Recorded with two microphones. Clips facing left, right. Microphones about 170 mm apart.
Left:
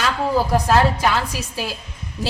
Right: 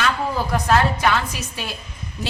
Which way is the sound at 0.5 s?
30° left (ahead or behind).